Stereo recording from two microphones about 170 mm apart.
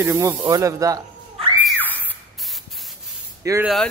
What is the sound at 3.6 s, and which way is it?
Speech, centre (ahead or behind).